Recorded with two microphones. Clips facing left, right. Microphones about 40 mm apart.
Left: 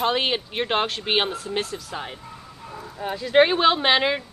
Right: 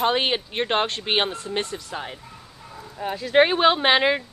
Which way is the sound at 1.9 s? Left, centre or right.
Centre.